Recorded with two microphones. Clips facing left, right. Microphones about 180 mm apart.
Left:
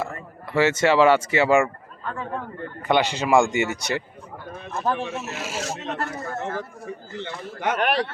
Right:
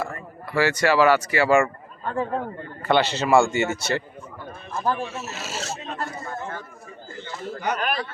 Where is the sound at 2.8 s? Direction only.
15° left (ahead or behind).